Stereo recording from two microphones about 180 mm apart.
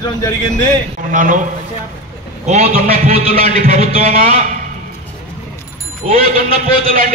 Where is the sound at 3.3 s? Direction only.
50° right (ahead or behind).